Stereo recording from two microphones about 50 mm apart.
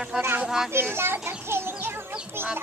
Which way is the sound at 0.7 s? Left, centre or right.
Right.